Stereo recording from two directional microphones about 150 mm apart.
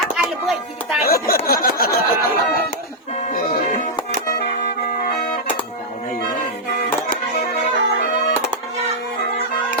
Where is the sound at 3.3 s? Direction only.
70° left (ahead or behind).